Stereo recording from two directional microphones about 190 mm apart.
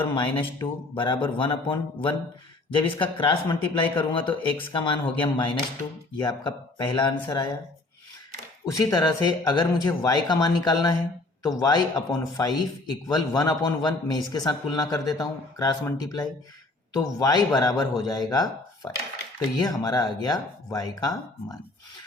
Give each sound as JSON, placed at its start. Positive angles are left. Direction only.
{"t": 0.1, "sound": "a man's voice", "side_deg": 25}
{"t": 8.6, "sound": "a man's voice", "side_deg": 20}
{"t": 19.5, "sound": "a man's voice", "side_deg": 20}